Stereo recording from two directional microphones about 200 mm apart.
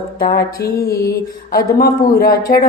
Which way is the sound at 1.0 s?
50° left (ahead or behind).